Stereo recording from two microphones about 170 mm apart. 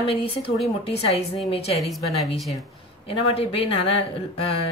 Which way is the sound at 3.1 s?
35° left (ahead or behind).